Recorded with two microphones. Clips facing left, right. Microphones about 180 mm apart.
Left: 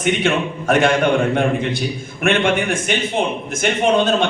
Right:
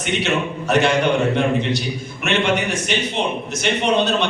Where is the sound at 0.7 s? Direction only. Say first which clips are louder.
Left 2 dB; 50° left (ahead or behind).